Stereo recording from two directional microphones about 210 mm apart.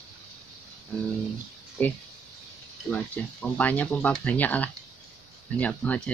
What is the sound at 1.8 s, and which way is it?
Speech, 10° left (ahead or behind).